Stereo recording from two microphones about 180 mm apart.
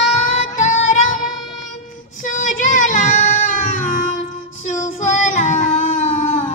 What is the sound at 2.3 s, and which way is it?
Child singing, 45° left (ahead or behind).